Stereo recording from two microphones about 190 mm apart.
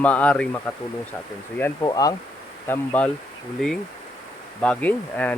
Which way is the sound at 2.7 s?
10° left (ahead or behind).